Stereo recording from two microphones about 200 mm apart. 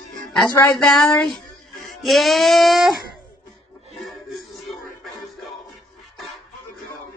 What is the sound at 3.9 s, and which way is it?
Music, centre (ahead or behind).